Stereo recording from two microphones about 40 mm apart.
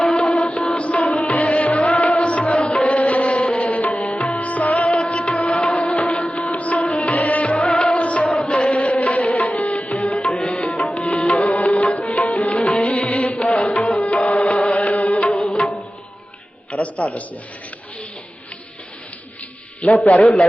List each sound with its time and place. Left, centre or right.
0.0 s music: centre
0.3 s music: left
3.7 s tabla: left
4.0 s music: left
4.4 s music: left
7.7 s music: left
8.4 s music: left
10.2 s music: left
10.8 s music: left
16.7 s a sound: left
19.8 s a man's voice: left